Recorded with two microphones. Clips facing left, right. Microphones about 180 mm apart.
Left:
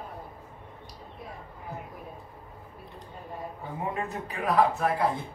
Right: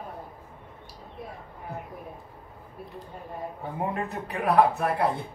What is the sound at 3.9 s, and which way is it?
A man's voice, 60° right (ahead or behind).